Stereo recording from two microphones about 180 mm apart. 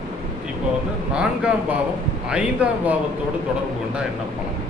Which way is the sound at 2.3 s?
5° right (ahead or behind).